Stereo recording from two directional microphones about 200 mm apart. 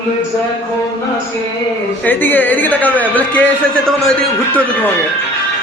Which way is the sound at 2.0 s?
10° left (ahead or behind).